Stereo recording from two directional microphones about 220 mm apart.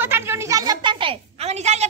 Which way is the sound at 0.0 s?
10° right (ahead or behind).